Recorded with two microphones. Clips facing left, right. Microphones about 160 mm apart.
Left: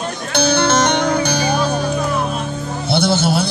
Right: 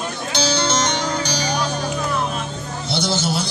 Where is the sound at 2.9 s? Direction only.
55° left (ahead or behind).